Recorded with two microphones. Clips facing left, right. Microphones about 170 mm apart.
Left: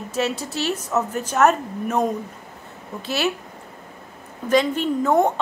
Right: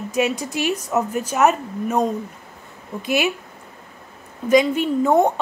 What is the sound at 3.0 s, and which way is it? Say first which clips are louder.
Speech: right 3 dB; 15° right (ahead or behind).